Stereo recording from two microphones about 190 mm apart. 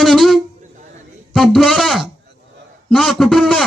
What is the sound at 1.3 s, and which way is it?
A man's voice, centre (ahead or behind).